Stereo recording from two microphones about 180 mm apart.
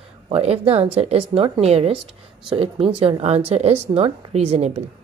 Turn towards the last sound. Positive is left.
turn(degrees=-35)  # may be behind; listen again after turning